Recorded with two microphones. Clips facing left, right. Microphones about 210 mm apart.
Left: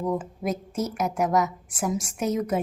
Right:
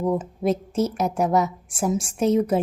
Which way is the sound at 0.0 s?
30° right (ahead or behind).